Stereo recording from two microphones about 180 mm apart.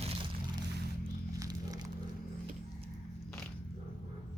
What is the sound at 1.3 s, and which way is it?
Music, 20° right (ahead or behind).